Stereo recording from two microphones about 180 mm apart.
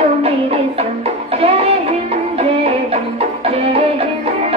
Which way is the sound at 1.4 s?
35° right (ahead or behind).